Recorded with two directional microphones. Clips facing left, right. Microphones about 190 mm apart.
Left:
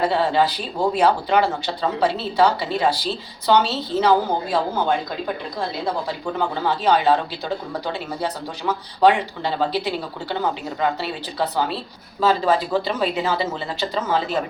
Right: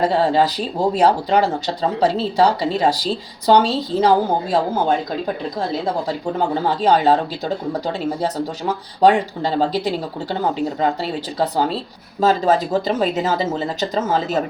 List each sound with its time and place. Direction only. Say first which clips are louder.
0.0 s speech: right 3 dB; 40° right (ahead or behind)